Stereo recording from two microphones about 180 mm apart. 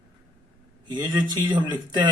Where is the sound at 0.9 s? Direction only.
25° right (ahead or behind).